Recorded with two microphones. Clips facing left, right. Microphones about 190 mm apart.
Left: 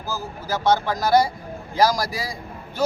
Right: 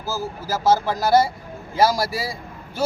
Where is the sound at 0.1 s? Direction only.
5° right (ahead or behind).